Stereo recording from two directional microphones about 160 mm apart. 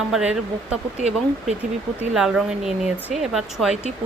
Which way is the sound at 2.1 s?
5° right (ahead or behind).